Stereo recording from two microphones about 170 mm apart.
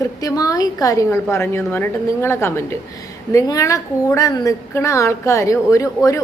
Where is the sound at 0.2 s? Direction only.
20° left (ahead or behind).